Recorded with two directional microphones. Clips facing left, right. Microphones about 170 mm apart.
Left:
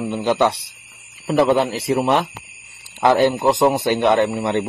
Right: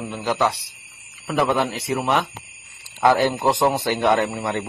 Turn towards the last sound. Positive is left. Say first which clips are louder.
# left 5 dB
turn(degrees=20)  # may be behind; listen again after turning